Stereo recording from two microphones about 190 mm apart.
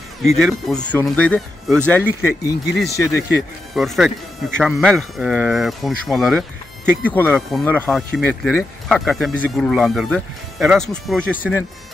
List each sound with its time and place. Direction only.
0.2 s speech: centre (ahead or behind)
3.7 s speech: centre (ahead or behind)